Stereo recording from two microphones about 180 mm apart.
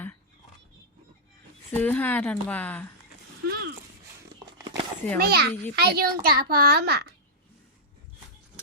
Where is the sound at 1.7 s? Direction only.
10° left (ahead or behind).